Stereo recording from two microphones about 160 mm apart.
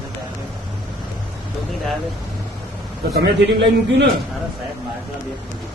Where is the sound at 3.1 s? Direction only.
85° right.